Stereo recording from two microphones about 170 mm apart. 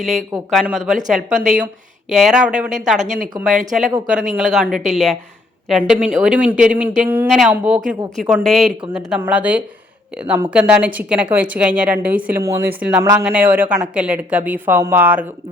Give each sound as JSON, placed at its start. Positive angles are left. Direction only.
{"t": 0.0, "sound": "speech", "side_deg": 0}
{"t": 3.0, "sound": "speech", "side_deg": -45}
{"t": 4.4, "sound": "speech", "side_deg": -5}